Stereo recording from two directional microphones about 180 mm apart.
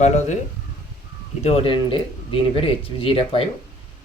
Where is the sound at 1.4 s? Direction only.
35° left (ahead or behind).